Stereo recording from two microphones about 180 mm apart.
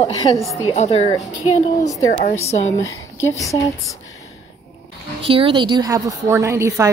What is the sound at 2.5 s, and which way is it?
Speech, 35° left (ahead or behind).